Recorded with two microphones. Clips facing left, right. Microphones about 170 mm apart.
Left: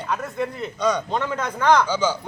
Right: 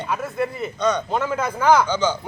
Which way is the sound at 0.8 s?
10° left (ahead or behind).